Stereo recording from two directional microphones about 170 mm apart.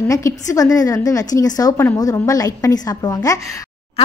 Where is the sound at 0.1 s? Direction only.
20° left (ahead or behind).